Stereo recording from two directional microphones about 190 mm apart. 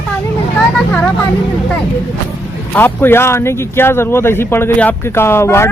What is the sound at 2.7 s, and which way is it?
A man's voice, 10° left (ahead or behind).